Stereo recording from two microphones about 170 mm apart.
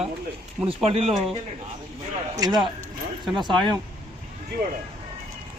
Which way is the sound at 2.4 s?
25° right (ahead or behind).